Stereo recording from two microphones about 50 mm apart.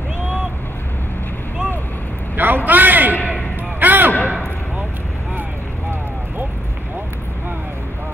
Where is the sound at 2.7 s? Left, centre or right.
Right.